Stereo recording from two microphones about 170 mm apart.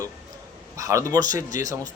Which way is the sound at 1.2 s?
50° left (ahead or behind).